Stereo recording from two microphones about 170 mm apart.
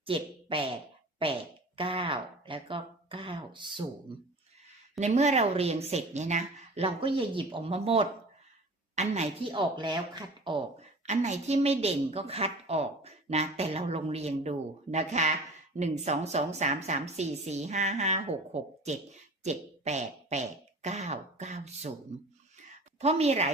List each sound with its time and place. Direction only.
0.0 s speech: 30° right (ahead or behind)
4.9 s a woman's voice: 40° right (ahead or behind)
9.5 s speech: 30° right (ahead or behind)
11.0 s a woman's voice: 40° right (ahead or behind)
23.0 s a woman's voice: 40° right (ahead or behind)